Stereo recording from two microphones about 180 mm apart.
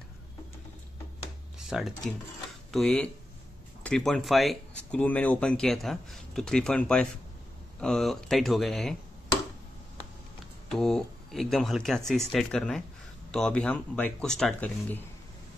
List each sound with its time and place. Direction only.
1.6 s speech: centre (ahead or behind)
10.7 s speech: centre (ahead or behind)